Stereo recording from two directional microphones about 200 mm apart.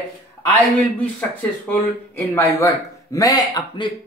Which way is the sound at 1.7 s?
10° left (ahead or behind).